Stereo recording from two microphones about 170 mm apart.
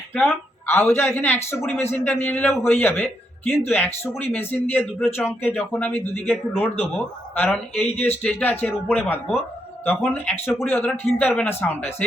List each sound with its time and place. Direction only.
0.7 s a man's voice: 10° left (ahead or behind)
7.9 s speech: 40° left (ahead or behind)
8.1 s a man's voice: 10° left (ahead or behind)